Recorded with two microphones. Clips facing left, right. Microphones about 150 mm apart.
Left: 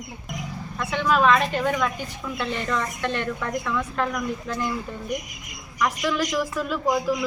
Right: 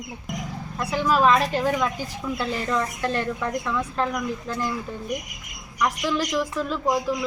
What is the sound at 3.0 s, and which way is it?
Speech, 35° right (ahead or behind).